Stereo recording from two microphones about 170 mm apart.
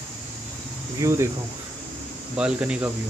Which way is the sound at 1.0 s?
20° right (ahead or behind).